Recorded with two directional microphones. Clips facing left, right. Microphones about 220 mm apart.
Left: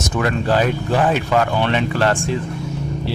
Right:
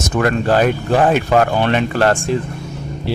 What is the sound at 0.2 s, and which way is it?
Speech, 50° right (ahead or behind).